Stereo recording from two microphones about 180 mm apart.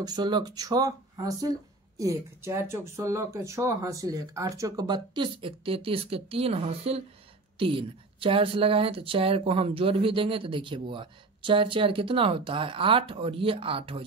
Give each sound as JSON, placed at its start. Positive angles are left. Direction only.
{"t": 0.0, "sound": "a woman's voice", "side_deg": -25}